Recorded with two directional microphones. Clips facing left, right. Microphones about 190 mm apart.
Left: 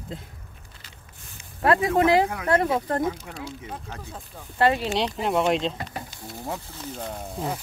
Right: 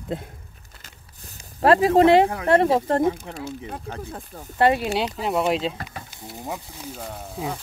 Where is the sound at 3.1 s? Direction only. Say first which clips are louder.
Right 3 dB; 50° right (ahead or behind).